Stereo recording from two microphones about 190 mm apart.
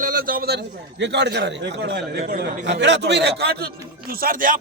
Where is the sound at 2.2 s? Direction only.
50° right (ahead or behind).